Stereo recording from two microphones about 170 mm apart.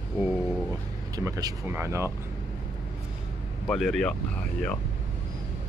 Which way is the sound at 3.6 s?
Centre (ahead or behind).